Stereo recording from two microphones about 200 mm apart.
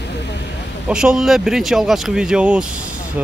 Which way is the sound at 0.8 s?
5° right (ahead or behind).